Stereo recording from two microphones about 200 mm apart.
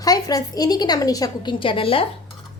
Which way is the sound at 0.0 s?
20° left (ahead or behind).